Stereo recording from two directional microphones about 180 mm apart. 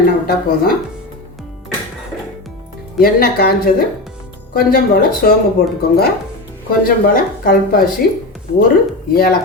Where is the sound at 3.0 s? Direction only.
55° left (ahead or behind).